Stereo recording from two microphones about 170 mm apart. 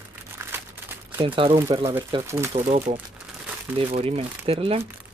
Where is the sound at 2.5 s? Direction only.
40° right (ahead or behind).